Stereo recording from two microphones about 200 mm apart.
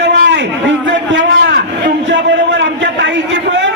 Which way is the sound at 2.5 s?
65° right (ahead or behind).